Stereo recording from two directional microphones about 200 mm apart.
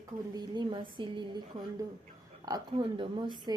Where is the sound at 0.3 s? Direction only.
25° right (ahead or behind).